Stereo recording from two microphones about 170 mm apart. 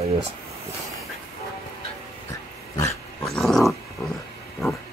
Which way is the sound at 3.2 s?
Centre (ahead or behind).